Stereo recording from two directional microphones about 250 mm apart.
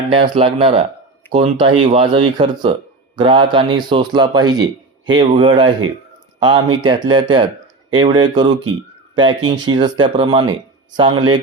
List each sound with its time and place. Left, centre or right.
0.1 s speech: right